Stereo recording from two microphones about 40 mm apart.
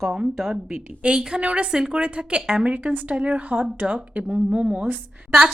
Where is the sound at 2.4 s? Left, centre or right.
Centre.